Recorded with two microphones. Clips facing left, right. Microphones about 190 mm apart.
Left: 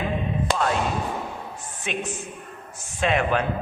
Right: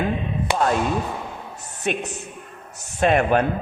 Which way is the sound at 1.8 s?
40° right (ahead or behind).